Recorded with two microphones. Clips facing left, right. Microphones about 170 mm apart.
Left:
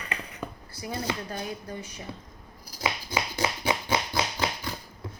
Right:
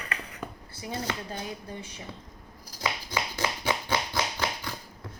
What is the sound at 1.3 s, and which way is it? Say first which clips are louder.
Speech: left 2 dB; 25° right (ahead or behind).